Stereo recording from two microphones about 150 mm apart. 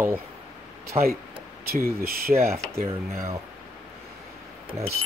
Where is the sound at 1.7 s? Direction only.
90° right.